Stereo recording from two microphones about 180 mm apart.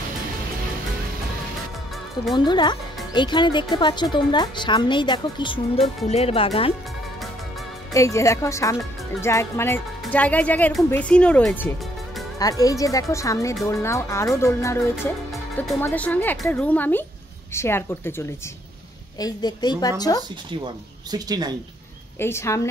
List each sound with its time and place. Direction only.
2.3 s a woman's voice: 25° left (ahead or behind)
7.9 s speech: 15° left (ahead or behind)
12.4 s a woman's voice: 20° left (ahead or behind)
15.8 s a woman's voice: 10° left (ahead or behind)
20.5 s speech: 25° right (ahead or behind)
22.2 s speech: 15° left (ahead or behind)